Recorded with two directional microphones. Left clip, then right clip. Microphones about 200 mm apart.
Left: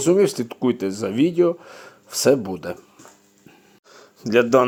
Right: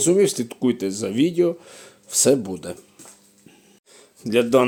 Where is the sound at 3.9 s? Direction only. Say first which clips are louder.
Left 2 dB; centre (ahead or behind).